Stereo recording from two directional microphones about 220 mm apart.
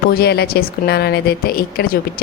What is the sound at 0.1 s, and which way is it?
A woman's voice, 45° left (ahead or behind).